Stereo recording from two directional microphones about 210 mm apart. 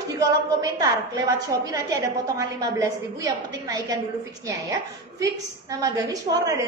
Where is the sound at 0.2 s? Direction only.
15° right (ahead or behind).